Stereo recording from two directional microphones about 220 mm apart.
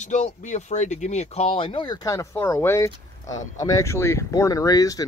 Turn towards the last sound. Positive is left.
turn(degrees=15)  # may be behind; listen again after turning